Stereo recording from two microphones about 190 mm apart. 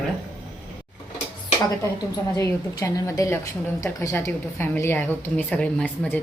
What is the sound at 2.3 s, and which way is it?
A woman's voice, 15° left (ahead or behind).